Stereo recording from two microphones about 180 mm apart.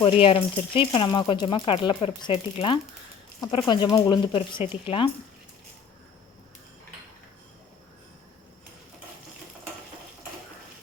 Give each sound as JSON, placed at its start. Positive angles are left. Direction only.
{"t": 0.0, "sound": "speech", "side_deg": 30}